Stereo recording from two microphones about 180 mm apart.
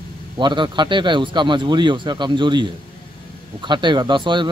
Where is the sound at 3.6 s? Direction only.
25° right (ahead or behind).